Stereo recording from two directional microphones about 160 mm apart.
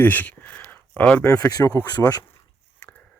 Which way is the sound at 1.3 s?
20° left (ahead or behind).